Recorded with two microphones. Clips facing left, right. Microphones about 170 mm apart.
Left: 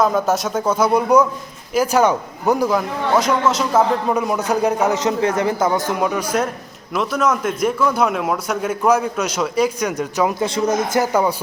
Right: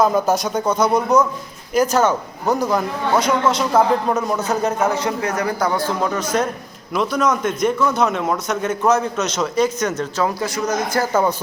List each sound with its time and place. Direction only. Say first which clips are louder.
0.0 s a man's voice: right 1 dB; centre (ahead or behind); by 10.3 s 15° left (ahead or behind)
10.4 s speech: left 3 dB; 25° left (ahead or behind)